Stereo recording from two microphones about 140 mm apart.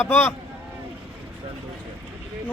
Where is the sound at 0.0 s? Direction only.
15° left (ahead or behind).